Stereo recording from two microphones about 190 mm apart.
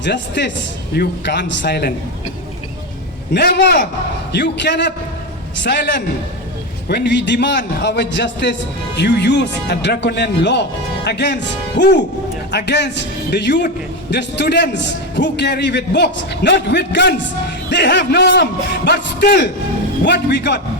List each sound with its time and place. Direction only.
0.0 s a man's voice: 65° left (ahead or behind)
3.3 s a man's voice: 60° left (ahead or behind)